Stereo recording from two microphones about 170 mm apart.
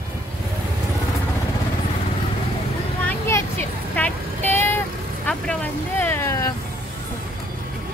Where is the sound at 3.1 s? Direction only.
15° left (ahead or behind).